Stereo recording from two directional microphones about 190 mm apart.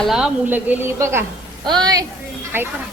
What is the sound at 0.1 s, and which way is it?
A woman's voice, 5° right (ahead or behind).